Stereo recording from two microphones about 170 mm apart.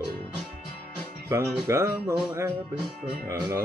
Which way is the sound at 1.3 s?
15° right (ahead or behind).